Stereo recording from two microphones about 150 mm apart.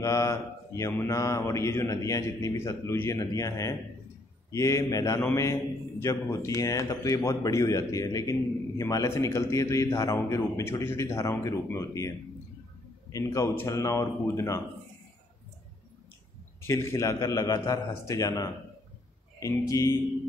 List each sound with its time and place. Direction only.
0.0 s a man's voice: 20° left (ahead or behind)
13.1 s a man's voice: 20° left (ahead or behind)
16.6 s a man's voice: 15° left (ahead or behind)